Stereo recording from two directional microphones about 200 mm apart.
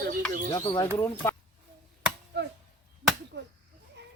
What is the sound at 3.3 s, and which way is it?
Speech, 60° right (ahead or behind).